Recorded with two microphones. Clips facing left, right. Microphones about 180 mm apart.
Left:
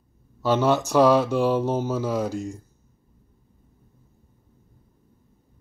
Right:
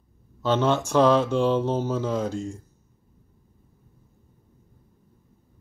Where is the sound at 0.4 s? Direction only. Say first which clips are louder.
Left 2 dB; 10° left (ahead or behind).